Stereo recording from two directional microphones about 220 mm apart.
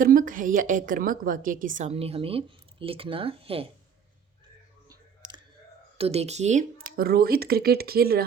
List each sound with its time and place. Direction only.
0.0 s a woman's voice: 40° right (ahead or behind)
6.0 s speech: 30° right (ahead or behind)
6.9 s speech: 45° right (ahead or behind)